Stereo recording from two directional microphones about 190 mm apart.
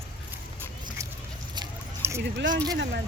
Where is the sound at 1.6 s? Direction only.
15° right (ahead or behind).